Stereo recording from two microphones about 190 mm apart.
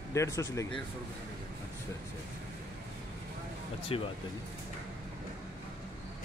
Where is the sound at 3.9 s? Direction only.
30° left (ahead or behind).